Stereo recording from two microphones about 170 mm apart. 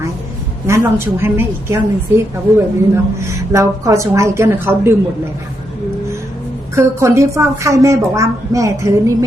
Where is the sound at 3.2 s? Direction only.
20° right (ahead or behind).